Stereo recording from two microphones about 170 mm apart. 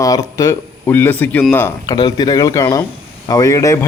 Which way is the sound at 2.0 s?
25° left (ahead or behind).